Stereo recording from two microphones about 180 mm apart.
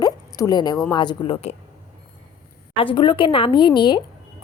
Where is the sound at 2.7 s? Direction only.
30° left (ahead or behind).